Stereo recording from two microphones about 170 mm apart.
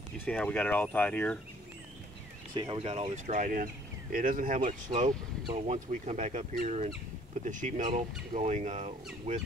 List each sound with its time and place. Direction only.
0.2 s speech: 5° left (ahead or behind)
2.5 s speech: 25° right (ahead or behind)